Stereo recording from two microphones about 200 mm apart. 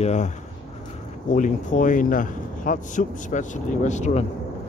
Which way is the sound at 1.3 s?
40° left (ahead or behind).